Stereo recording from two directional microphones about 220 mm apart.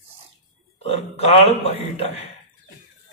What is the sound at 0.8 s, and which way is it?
A man's voice, 25° left (ahead or behind).